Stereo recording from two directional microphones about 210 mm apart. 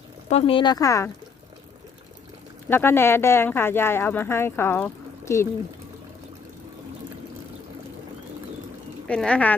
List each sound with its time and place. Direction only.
0.3 s speech: 30° left (ahead or behind)
2.6 s speech: 10° left (ahead or behind)
9.0 s speech: 5° left (ahead or behind)